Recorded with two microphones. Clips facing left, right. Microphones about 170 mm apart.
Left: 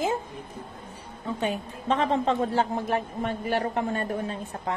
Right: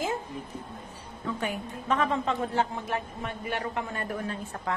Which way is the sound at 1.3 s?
25° left (ahead or behind).